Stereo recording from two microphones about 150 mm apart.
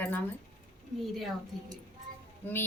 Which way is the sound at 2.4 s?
15° left (ahead or behind).